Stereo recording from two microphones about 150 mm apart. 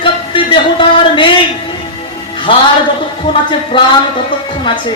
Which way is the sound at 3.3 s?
35° left (ahead or behind).